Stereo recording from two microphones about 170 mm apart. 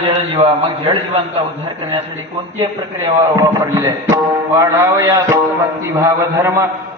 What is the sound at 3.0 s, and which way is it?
A man's voice, 20° right (ahead or behind).